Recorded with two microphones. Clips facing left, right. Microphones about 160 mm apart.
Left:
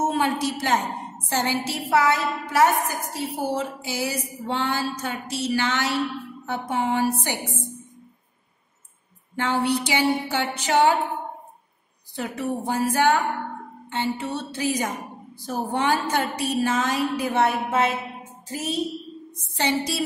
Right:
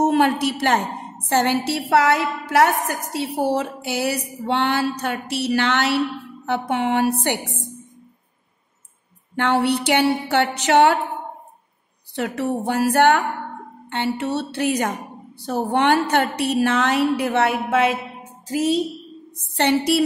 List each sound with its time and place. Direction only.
0.0 s a woman's voice: 65° right (ahead or behind)
9.3 s a woman's voice: 65° right (ahead or behind)
12.2 s a woman's voice: 70° right (ahead or behind); by 18.8 s 90° right
19.5 s a woman's voice: 65° right (ahead or behind)